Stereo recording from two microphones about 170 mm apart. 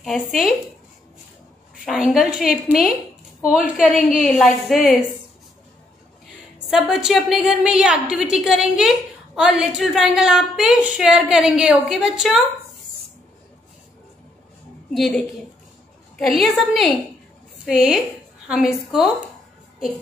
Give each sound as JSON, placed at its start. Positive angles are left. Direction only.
{"t": 0.0, "sound": "a woman's voice", "side_deg": 0}
{"t": 2.0, "sound": "a woman's voice", "side_deg": -5}
{"t": 6.7, "sound": "a woman's voice", "side_deg": 0}
{"t": 15.0, "sound": "a woman's voice", "side_deg": 5}